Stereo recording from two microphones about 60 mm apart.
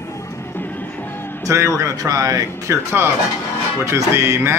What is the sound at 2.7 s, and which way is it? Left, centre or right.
Music, right.